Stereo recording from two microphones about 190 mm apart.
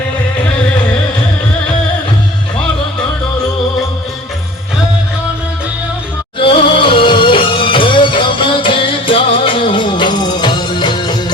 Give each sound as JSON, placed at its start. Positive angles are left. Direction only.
{"t": 6.4, "sound": "music", "side_deg": 25}